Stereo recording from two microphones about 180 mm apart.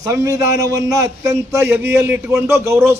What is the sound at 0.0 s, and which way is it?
A man's voice, 15° right (ahead or behind).